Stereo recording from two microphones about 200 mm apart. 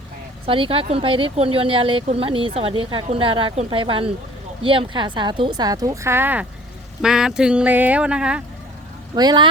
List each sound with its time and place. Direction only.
0.4 s speech: 25° right (ahead or behind); by 8.4 s 5° right (ahead or behind)
9.1 s speech: 20° right (ahead or behind)